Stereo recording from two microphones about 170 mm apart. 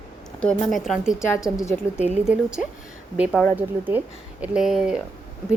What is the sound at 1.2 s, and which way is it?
Speech, 15° left (ahead or behind).